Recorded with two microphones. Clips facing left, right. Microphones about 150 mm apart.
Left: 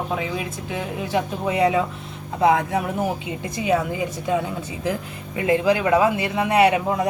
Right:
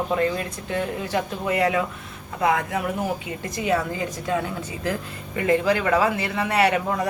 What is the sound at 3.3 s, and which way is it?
Speech, 15° left (ahead or behind).